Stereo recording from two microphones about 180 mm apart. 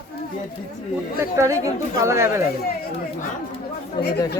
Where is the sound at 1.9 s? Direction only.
15° right (ahead or behind).